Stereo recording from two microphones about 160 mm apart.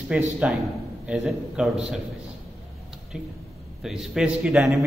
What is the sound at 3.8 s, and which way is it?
A man's voice, 5° right (ahead or behind).